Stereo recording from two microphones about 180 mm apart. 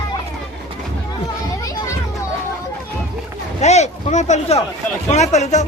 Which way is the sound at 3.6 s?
40° left (ahead or behind).